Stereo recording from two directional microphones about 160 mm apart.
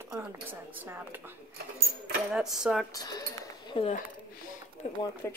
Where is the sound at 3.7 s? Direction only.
35° left (ahead or behind).